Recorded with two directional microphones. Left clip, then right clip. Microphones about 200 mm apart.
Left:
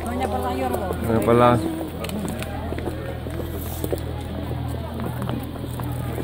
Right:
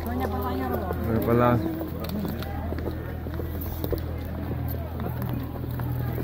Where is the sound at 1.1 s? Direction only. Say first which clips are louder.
Left 6 dB; 15° left (ahead or behind).